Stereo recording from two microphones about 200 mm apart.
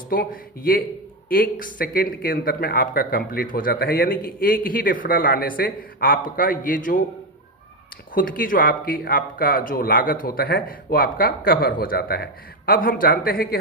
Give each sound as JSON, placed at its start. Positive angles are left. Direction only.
{"t": 0.1, "sound": "speech", "side_deg": 45}
{"t": 8.1, "sound": "speech", "side_deg": 45}